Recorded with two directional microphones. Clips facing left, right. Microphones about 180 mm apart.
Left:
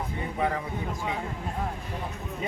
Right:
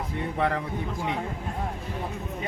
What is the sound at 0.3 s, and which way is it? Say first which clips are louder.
Speech: right 2 dB; 70° right (ahead or behind).